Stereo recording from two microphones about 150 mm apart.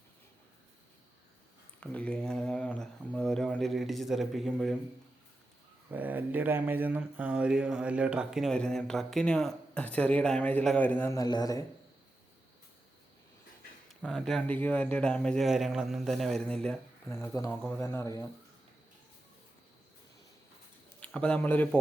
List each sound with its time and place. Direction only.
1.8 s speech: 10° left (ahead or behind)
5.9 s speech: 10° right (ahead or behind); by 11.2 s 15° left (ahead or behind)
11.2 s speech: 25° left (ahead or behind)
14.0 s speech: 5° left (ahead or behind)
17.1 s speech: 15° left (ahead or behind)
17.5 s speech: 10° left (ahead or behind)
17.7 s speech: 20° left (ahead or behind)
21.0 s speech: 5° left (ahead or behind)